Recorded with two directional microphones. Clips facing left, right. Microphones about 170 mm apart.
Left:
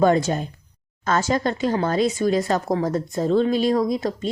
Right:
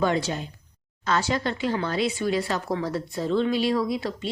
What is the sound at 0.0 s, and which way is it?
Speech, 45° left (ahead or behind).